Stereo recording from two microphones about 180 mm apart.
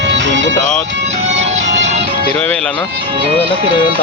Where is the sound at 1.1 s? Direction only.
40° right (ahead or behind).